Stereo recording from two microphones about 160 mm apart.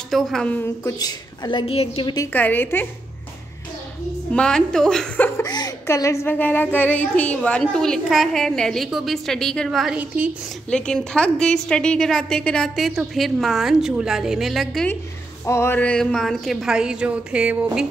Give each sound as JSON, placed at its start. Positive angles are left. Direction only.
{"t": 0.1, "sound": "a woman's voice", "side_deg": 5}
{"t": 0.8, "sound": "a woman's voice", "side_deg": 25}
{"t": 2.3, "sound": "a woman's voice", "side_deg": 10}
{"t": 4.3, "sound": "a woman's voice", "side_deg": 5}
{"t": 5.4, "sound": "chuckle", "side_deg": 25}
{"t": 6.2, "sound": "a woman's voice", "side_deg": 10}
{"t": 10.7, "sound": "a woman's voice", "side_deg": 5}
{"t": 15.4, "sound": "a woman's voice", "side_deg": 15}